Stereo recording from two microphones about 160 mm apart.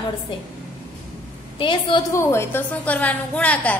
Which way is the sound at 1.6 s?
30° left (ahead or behind).